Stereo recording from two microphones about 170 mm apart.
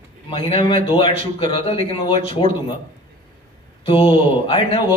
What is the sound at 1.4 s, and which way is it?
Speech, 35° left (ahead or behind).